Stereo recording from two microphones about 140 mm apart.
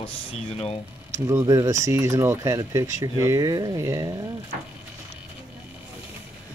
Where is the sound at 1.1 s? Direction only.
20° right (ahead or behind).